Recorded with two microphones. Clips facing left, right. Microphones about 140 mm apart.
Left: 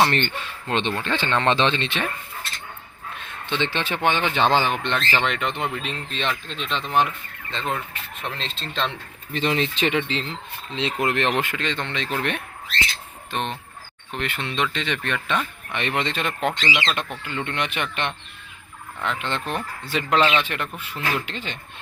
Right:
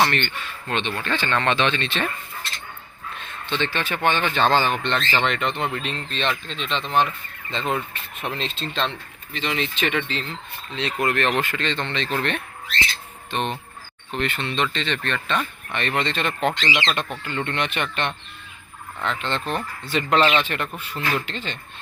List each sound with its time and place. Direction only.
0.1 s speech: 35° left (ahead or behind)
3.2 s speech: 15° left (ahead or behind)
7.5 s speech: centre (ahead or behind)
9.3 s speech: 40° left (ahead or behind); by 12.4 s 10° left (ahead or behind)
13.3 s speech: centre (ahead or behind)
19.0 s speech: 10° left (ahead or behind)